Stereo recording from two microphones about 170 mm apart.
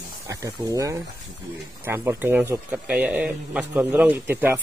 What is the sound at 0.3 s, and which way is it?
A man's voice, 20° right (ahead or behind).